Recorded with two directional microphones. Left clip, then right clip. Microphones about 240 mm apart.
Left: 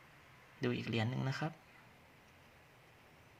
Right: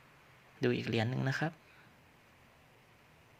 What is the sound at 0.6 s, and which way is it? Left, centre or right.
Speech, centre.